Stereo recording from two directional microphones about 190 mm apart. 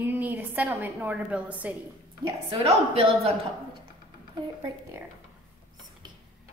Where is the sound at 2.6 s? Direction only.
30° right (ahead or behind).